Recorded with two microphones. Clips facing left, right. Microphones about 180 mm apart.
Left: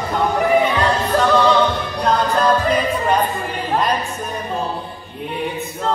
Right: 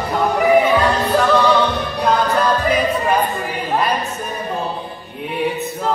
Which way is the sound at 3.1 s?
5° right (ahead or behind).